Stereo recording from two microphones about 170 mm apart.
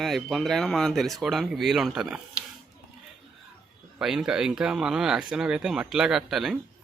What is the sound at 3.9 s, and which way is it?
Speech, 5° right (ahead or behind).